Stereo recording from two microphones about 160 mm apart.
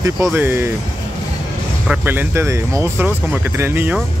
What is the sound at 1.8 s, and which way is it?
Speech, 15° right (ahead or behind).